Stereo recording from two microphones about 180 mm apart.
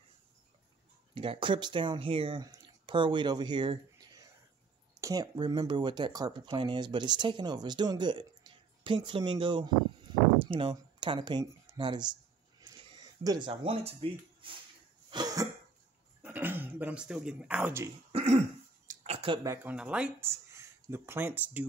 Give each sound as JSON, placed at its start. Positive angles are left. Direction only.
{"t": 1.1, "sound": "speech", "side_deg": -30}
{"t": 12.5, "sound": "a sound", "side_deg": -20}
{"t": 13.5, "sound": "speech", "side_deg": -30}
{"t": 15.0, "sound": "cough", "side_deg": -25}
{"t": 16.2, "sound": "speech", "side_deg": -10}
{"t": 18.1, "sound": "cough", "side_deg": -35}
{"t": 18.9, "sound": "a sound", "side_deg": -35}
{"t": 19.4, "sound": "speech", "side_deg": -10}